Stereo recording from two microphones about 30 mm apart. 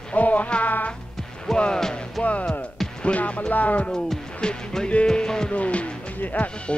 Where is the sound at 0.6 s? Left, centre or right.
Left.